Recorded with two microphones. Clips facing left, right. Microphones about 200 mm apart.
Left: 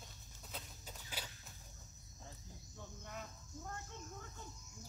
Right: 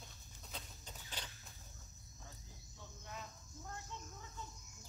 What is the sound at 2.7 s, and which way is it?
Cricket, 50° left (ahead or behind).